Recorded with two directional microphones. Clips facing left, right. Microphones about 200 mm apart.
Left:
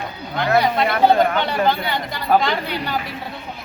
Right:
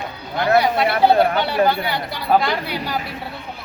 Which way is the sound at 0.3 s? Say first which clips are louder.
Right 1 dB; 10° right (ahead or behind).